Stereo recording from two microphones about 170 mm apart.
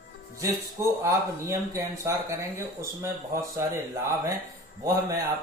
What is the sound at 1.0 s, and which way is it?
Speech, 15° right (ahead or behind).